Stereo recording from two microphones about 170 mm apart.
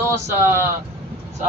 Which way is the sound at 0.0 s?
15° right (ahead or behind).